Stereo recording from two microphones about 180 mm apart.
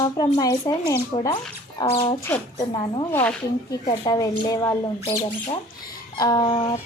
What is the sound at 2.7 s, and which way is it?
Speech, 25° left (ahead or behind).